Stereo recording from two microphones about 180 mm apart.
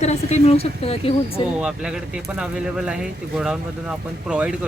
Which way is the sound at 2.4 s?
5° right (ahead or behind).